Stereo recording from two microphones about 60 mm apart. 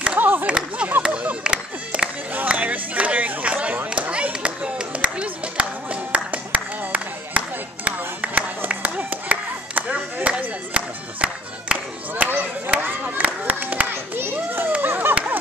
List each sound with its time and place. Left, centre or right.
0.2 s a sound: right
0.5 s speech: centre
1.0 s a sound: centre
11.7 s clapping: centre
12.3 s chop: right
12.8 s children playing: right